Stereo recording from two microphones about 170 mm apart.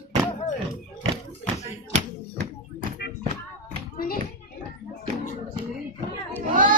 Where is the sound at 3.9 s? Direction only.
60° left (ahead or behind).